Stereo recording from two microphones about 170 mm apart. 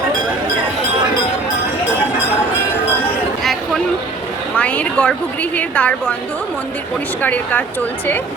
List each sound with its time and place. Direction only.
4.5 s a woman's voice: 10° left (ahead or behind)
7.2 s a woman's voice: 10° left (ahead or behind)